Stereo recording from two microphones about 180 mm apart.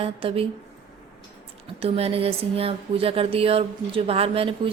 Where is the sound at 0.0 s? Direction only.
30° right (ahead or behind).